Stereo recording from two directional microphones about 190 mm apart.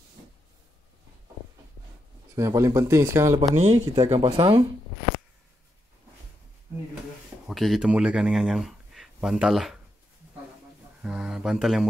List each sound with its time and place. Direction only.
2.3 s speech: 15° right (ahead or behind)
3.5 s speech: 35° right (ahead or behind)
3.8 s speech: 20° right (ahead or behind)
4.1 s speech: 30° right (ahead or behind)
7.4 s speech: centre (ahead or behind)
11.0 s speech: 5° right (ahead or behind)